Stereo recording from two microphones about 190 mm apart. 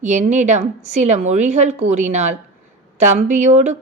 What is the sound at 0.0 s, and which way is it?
A woman's voice, 40° right (ahead or behind).